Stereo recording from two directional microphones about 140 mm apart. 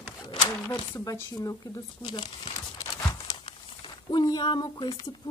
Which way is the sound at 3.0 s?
25° left (ahead or behind).